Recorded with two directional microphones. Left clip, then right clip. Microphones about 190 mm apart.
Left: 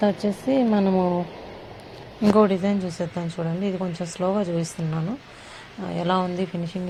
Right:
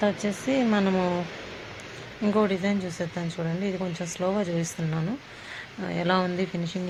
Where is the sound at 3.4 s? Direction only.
5° left (ahead or behind).